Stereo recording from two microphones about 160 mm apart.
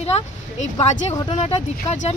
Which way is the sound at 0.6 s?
45° left (ahead or behind).